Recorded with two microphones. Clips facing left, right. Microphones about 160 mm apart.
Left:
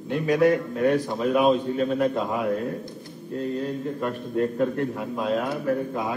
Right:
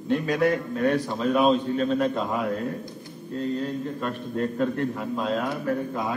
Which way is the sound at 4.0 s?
15° left (ahead or behind).